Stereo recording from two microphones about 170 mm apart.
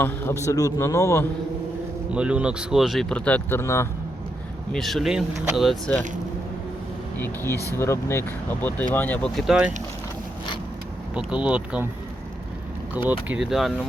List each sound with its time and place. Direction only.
0.0 s speech: 15° left (ahead or behind)
2.1 s speech: 5° right (ahead or behind); by 3.8 s 15° left (ahead or behind)
4.7 s speech: centre (ahead or behind)
7.2 s speech: 15° left (ahead or behind); by 9.7 s 5° right (ahead or behind)
11.1 s speech: 5° right (ahead or behind)
12.9 s speech: 10° right (ahead or behind)